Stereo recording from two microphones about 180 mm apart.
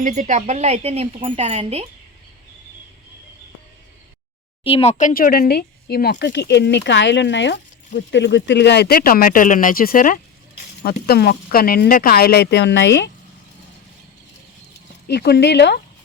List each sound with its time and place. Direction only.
0.0 s speech: 40° right (ahead or behind)
4.6 s speech: 35° left (ahead or behind); by 13.1 s 80° left
15.0 s speech: 65° left (ahead or behind)